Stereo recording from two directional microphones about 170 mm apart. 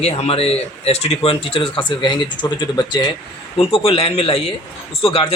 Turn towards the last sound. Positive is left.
turn(degrees=30)  # may be behind; listen again after turning